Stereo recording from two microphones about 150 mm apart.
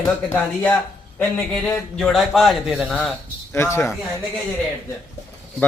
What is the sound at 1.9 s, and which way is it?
Speech, centre (ahead or behind).